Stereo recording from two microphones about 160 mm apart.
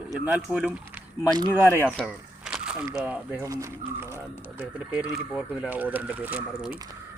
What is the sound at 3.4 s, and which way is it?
Speech, 20° right (ahead or behind).